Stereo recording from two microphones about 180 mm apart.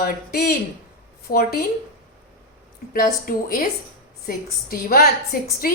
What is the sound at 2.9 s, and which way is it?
A woman's voice, 50° left (ahead or behind).